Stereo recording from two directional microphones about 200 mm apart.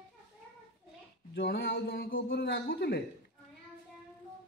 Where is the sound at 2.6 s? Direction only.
55° left (ahead or behind).